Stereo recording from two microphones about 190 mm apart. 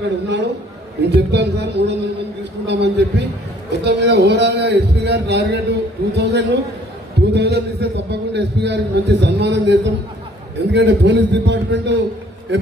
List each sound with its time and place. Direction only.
0.0 s a man's voice: 65° right (ahead or behind)